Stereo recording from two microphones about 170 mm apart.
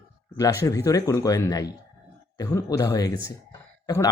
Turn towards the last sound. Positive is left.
turn(degrees=20)  # may be behind; listen again after turning